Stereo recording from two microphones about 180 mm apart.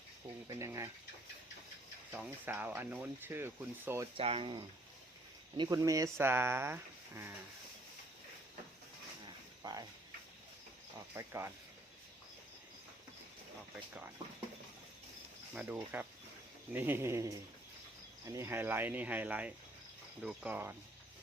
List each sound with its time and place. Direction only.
0.4 s speech: 20° right (ahead or behind)
2.1 s speech: 10° right (ahead or behind)
4.2 s speech: 30° right (ahead or behind)
5.6 s speech: 20° right (ahead or behind)
9.2 s a sound: 20° right (ahead or behind)
11.2 s speech: 15° right (ahead or behind)
15.5 s speech: 10° right (ahead or behind)